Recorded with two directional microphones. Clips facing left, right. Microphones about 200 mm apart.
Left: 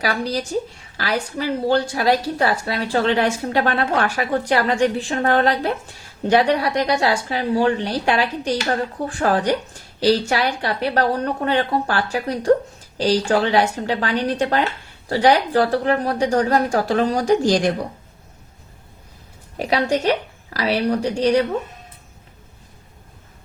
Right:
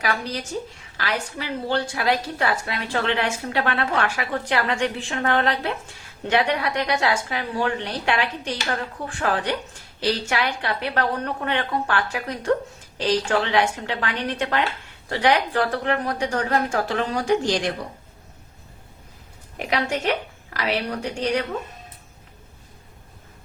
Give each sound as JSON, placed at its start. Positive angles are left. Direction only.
{"t": 0.0, "sound": "a woman's voice", "side_deg": 35}
{"t": 19.5, "sound": "a woman's voice", "side_deg": 35}